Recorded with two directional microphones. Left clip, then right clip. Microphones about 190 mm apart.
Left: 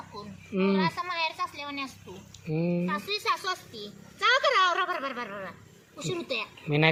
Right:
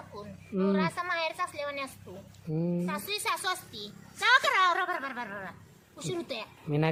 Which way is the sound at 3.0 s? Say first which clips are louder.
Left 1 dB; 50° right (ahead or behind).